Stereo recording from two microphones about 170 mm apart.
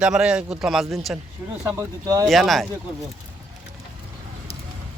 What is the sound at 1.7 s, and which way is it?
Speech, 20° right (ahead or behind).